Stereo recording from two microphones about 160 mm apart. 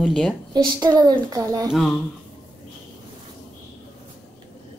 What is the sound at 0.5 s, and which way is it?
A woman's voice, 25° right (ahead or behind).